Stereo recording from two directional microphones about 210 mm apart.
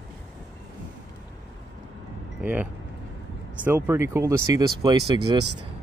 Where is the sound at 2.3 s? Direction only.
5° right (ahead or behind).